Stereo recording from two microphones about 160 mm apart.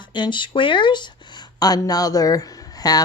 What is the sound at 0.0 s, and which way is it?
Speech, 30° left (ahead or behind).